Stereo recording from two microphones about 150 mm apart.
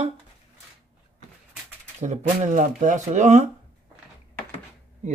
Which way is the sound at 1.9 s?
55° right (ahead or behind).